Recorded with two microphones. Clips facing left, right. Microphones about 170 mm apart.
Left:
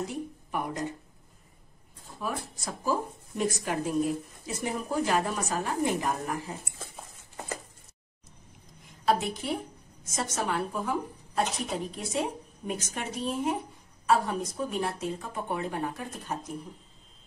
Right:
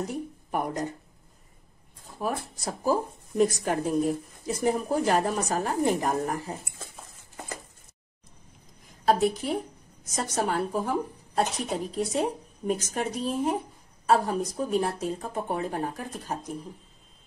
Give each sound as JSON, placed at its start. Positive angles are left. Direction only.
{"t": 0.0, "sound": "a sound", "side_deg": -40}
{"t": 2.1, "sound": "speech", "side_deg": -35}
{"t": 9.0, "sound": "speech", "side_deg": -40}